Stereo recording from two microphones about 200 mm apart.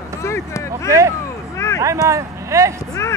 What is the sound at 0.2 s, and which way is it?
Speech, 15° left (ahead or behind).